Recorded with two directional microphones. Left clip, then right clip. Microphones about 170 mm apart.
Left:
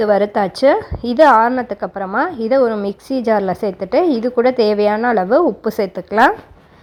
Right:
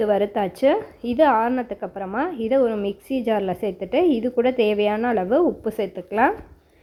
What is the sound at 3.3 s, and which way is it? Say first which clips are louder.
A woman's voice: left 7 dB; 30° left (ahead or behind).